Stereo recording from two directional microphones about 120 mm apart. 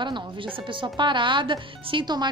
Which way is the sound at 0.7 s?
40° right (ahead or behind).